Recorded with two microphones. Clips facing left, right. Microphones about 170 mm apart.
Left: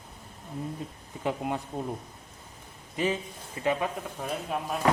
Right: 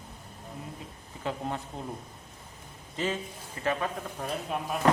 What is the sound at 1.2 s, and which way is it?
Speech, 15° left (ahead or behind).